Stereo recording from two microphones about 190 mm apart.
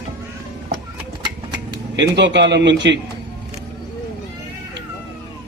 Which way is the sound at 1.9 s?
65° right (ahead or behind).